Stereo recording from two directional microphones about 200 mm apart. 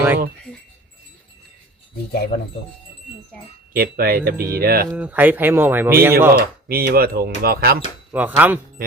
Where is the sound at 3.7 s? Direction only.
50° right (ahead or behind).